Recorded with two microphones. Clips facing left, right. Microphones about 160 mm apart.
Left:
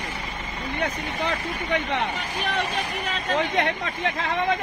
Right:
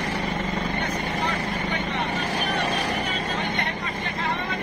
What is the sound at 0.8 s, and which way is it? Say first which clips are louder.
Vehicle: right 1 dB; 90° left.